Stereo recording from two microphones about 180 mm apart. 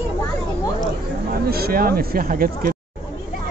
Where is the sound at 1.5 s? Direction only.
60° right (ahead or behind).